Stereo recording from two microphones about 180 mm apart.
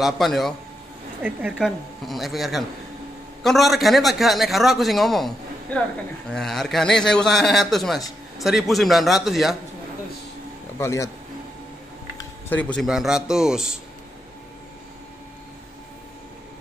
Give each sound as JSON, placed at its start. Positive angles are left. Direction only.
{"t": 0.0, "sound": "a man's voice", "side_deg": 0}
{"t": 10.8, "sound": "speech", "side_deg": 15}
{"t": 12.4, "sound": "a man's voice", "side_deg": 10}